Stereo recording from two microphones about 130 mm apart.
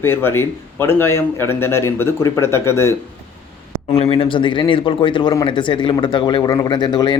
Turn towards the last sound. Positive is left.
turn(degrees=35)  # may be behind; listen again after turning